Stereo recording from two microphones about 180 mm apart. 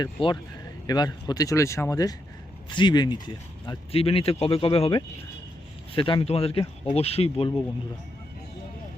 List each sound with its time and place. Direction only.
0.0 s speech: 25° left (ahead or behind)